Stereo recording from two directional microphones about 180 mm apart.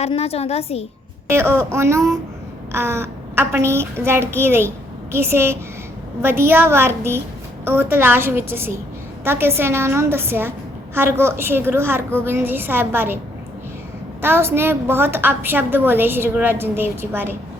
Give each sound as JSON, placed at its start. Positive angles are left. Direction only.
{"t": 0.0, "sound": "a woman's voice", "side_deg": 35}
{"t": 1.3, "sound": "a woman's voice", "side_deg": -15}
{"t": 14.2, "sound": "a woman's voice", "side_deg": -15}